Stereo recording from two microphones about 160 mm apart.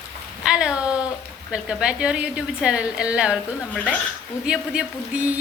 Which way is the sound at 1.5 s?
5° right (ahead or behind).